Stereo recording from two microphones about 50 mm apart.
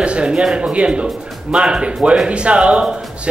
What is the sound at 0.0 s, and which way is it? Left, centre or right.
A man's voice, right.